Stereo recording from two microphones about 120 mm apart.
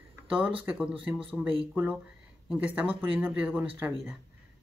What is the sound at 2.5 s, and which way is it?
Speech, 10° right (ahead or behind).